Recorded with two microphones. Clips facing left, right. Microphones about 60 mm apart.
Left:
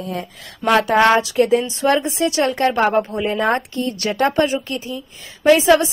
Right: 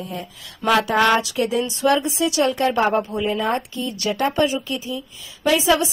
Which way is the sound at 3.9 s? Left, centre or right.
Left.